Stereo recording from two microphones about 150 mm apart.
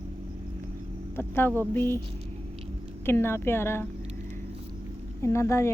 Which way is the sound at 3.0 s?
15° left (ahead or behind).